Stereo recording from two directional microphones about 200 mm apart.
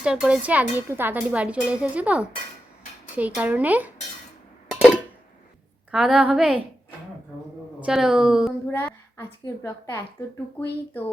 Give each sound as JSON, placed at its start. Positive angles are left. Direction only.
{"t": 0.0, "sound": "speech", "side_deg": -5}
{"t": 5.9, "sound": "a woman's voice", "side_deg": 0}
{"t": 7.9, "sound": "a woman's voice", "side_deg": -5}
{"t": 8.7, "sound": "a woman's voice", "side_deg": 10}